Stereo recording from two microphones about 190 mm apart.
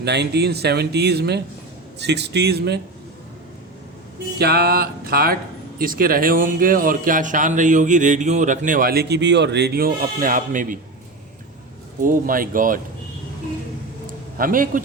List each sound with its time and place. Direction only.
0.0 s speech: 60° right (ahead or behind)
4.4 s speech: 55° right (ahead or behind)
12.0 s speech: 45° right (ahead or behind)
14.3 s speech: 45° right (ahead or behind)